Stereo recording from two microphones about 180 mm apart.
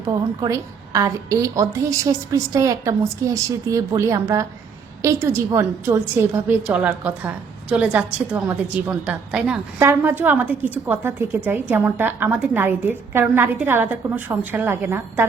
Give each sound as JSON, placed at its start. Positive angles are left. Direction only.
{"t": 0.4, "sound": "a woman's voice", "side_deg": -20}